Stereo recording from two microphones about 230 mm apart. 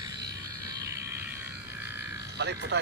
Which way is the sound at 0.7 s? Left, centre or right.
Centre.